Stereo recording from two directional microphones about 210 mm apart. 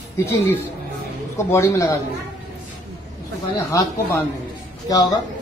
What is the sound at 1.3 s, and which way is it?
Speech, 15° left (ahead or behind).